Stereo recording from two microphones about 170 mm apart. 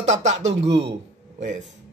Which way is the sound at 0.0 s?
40° right (ahead or behind).